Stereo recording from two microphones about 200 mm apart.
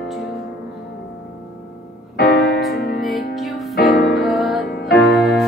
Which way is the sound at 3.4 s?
Centre (ahead or behind).